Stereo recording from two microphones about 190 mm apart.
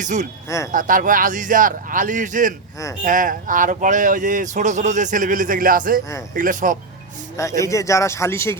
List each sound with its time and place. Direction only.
0.0 s speech: 40° right (ahead or behind)
0.4 s speech: 15° left (ahead or behind)
0.7 s speech: 45° right (ahead or behind)
7.6 s speech: 15° left (ahead or behind)